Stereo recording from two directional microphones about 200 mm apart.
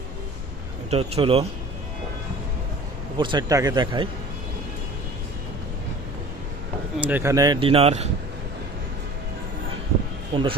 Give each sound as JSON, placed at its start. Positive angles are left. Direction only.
{"t": 0.9, "sound": "speech", "side_deg": -30}
{"t": 3.2, "sound": "speech", "side_deg": -20}
{"t": 6.9, "sound": "speech", "side_deg": -10}
{"t": 10.3, "sound": "speech", "side_deg": -25}